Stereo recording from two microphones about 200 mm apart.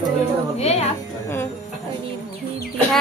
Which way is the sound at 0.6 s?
30° left (ahead or behind).